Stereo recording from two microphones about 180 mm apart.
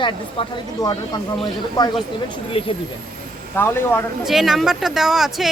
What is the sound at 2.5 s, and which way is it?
Speech, 30° left (ahead or behind).